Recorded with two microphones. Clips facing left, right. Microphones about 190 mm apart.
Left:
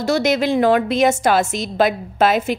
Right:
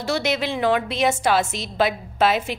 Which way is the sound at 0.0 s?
45° left (ahead or behind).